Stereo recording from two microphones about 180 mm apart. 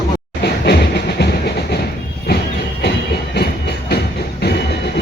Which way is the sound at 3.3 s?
65° left (ahead or behind).